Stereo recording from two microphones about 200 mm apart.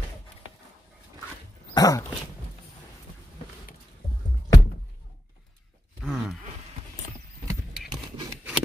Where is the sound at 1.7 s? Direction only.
20° left (ahead or behind).